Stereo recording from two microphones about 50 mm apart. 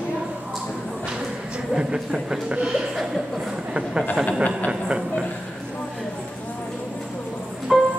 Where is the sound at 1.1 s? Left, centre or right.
Centre.